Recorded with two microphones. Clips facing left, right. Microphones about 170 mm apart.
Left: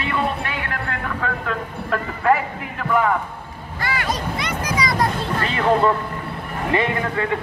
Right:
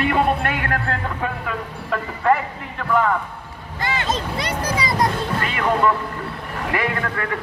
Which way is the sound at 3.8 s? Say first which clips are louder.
Right 1 dB; 25° right (ahead or behind).